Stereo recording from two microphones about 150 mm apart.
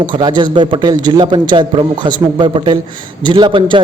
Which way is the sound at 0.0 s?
30° right (ahead or behind).